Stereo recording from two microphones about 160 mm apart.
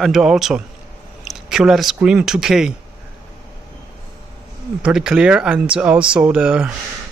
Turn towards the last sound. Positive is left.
turn(degrees=-5)  # may be behind; listen again after turning